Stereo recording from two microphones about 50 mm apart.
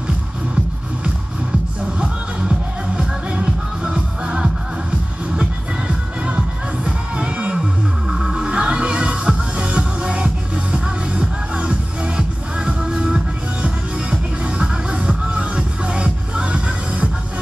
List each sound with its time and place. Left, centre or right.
3.0 s music: centre
8.1 s music: centre